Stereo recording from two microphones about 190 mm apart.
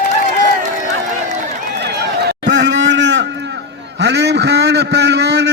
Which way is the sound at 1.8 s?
60° right (ahead or behind).